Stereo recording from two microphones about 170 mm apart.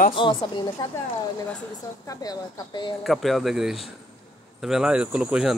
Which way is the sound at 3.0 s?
Centre (ahead or behind).